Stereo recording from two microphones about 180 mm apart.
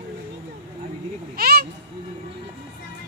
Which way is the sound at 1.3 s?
60° right (ahead or behind).